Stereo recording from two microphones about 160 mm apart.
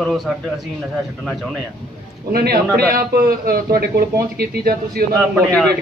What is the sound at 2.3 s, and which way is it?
A man's voice, 70° right (ahead or behind).